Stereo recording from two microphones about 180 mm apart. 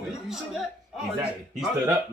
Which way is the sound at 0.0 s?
Centre (ahead or behind).